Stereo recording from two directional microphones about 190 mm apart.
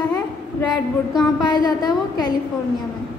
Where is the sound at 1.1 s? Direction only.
20° left (ahead or behind).